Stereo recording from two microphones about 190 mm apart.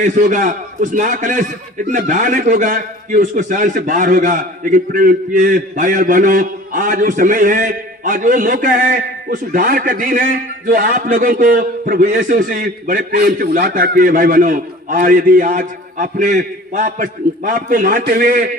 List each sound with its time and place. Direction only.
0.0 s a man's voice: 40° right (ahead or behind)